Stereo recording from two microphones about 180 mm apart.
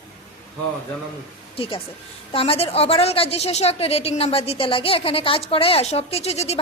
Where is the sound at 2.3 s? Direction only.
30° left (ahead or behind).